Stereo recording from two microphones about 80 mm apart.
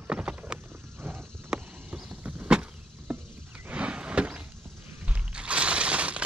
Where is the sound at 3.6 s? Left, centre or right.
Centre.